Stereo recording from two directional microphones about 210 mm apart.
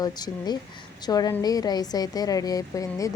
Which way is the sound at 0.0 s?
20° left (ahead or behind).